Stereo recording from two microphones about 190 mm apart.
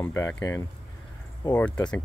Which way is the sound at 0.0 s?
15° left (ahead or behind).